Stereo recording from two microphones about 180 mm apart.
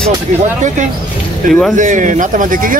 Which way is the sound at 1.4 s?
45° right (ahead or behind).